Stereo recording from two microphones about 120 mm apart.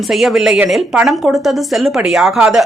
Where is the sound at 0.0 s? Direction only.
Centre (ahead or behind).